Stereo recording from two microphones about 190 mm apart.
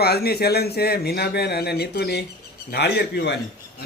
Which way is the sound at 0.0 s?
55° left (ahead or behind).